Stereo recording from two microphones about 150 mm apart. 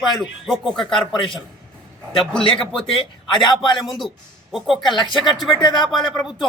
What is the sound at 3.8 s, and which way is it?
Speech, centre (ahead or behind).